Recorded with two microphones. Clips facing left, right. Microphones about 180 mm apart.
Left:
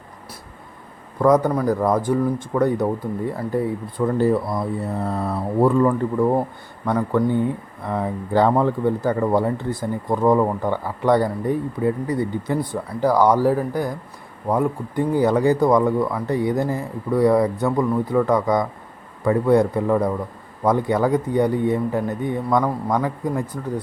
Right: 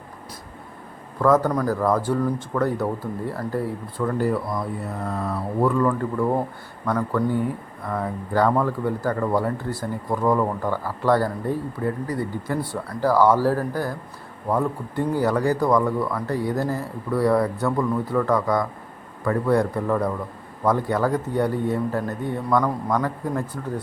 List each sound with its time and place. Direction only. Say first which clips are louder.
1.2 s speech: left 2 dB; 15° left (ahead or behind)
5.0 s speech: left 3 dB; 35° left (ahead or behind); by 23.8 s 15° left (ahead or behind)